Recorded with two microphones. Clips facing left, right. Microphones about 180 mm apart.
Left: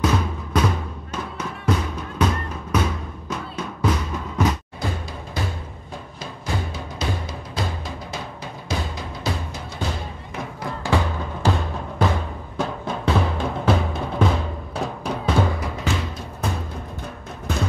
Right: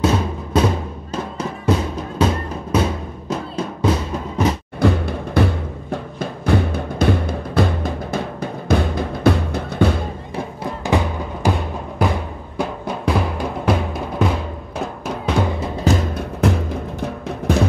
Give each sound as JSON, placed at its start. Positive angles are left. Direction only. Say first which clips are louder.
{"t": 0.0, "sound": "music", "louder": "right 4 dB", "side_deg": -25}
{"t": 4.7, "sound": "timpani", "louder": "right 11 dB", "side_deg": -60}
{"t": 10.3, "sound": "music", "louder": "right 2 dB", "side_deg": -20}
{"t": 15.6, "sound": "music", "louder": "right 7 dB", "side_deg": -35}
{"t": 16.2, "sound": "music", "louder": "right 9 dB", "side_deg": -85}